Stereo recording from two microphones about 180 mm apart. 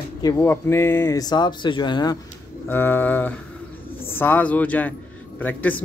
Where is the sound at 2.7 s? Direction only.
10° left (ahead or behind).